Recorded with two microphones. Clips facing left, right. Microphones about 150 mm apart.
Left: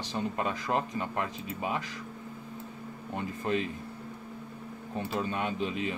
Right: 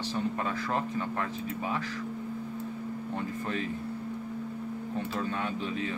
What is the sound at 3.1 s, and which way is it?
Speech, 20° left (ahead or behind).